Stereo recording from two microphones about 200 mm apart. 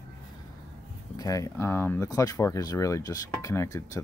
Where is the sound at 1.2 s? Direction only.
15° left (ahead or behind).